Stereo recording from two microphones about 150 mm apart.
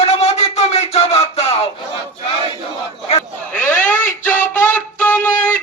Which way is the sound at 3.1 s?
50° left (ahead or behind).